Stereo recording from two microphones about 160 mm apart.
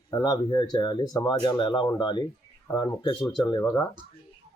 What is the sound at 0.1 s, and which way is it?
Speech, 25° left (ahead or behind).